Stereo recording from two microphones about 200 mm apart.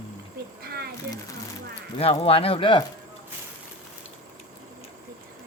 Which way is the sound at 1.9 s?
30° left (ahead or behind).